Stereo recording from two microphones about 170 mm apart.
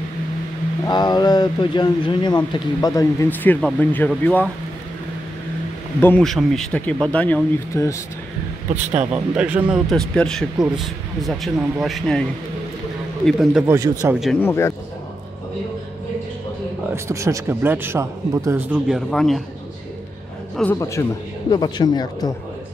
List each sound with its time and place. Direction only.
0.8 s speech: 25° left (ahead or behind)
5.9 s speech: 10° left (ahead or behind)
9.1 s a man's voice: 10° right (ahead or behind)
13.7 s a man's voice: 15° right (ahead or behind)
14.4 s speech: 15° left (ahead or behind)
16.9 s a man's voice: 20° right (ahead or behind); by 19.4 s centre (ahead or behind)
20.6 s a man's voice: centre (ahead or behind)
21.0 s speech: 20° left (ahead or behind)